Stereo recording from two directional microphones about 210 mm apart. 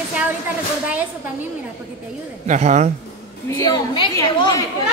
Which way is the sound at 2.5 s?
35° right (ahead or behind).